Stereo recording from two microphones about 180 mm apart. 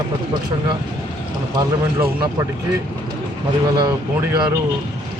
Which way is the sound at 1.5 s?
20° right (ahead or behind).